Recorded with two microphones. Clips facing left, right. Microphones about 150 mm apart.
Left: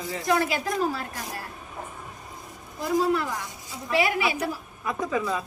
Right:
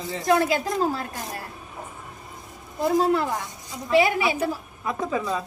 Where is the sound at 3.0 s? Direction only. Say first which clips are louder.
Right 3 dB; 25° right (ahead or behind).